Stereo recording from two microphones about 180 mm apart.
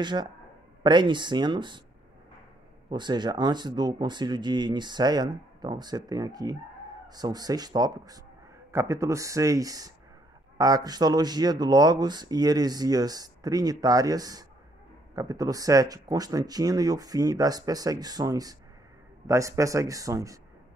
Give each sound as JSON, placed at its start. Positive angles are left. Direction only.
{"t": 0.0, "sound": "speech", "side_deg": -25}
{"t": 2.9, "sound": "speech", "side_deg": -25}